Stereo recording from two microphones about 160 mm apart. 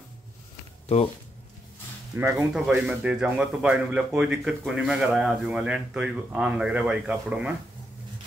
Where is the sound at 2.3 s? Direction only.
Centre (ahead or behind).